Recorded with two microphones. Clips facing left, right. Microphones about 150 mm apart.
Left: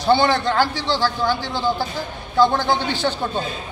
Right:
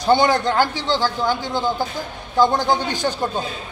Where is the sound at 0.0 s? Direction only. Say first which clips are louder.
Right 1 dB; 15° right (ahead or behind).